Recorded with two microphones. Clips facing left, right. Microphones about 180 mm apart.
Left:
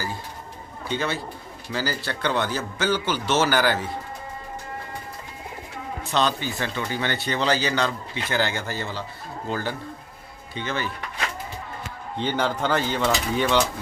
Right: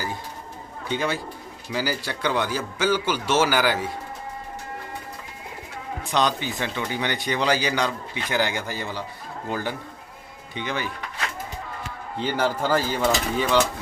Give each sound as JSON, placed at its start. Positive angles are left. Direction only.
{"t": 0.8, "sound": "speech", "side_deg": -10}
{"t": 6.0, "sound": "speech", "side_deg": -15}
{"t": 12.2, "sound": "speech", "side_deg": -5}